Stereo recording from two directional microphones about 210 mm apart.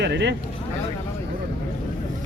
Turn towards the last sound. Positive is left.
turn(degrees=-55)  # may be behind; listen again after turning